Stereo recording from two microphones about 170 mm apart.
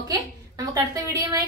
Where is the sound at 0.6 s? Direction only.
20° right (ahead or behind).